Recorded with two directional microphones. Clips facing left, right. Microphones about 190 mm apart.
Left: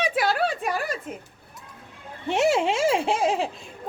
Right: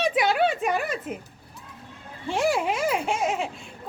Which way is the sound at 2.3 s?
25° left (ahead or behind).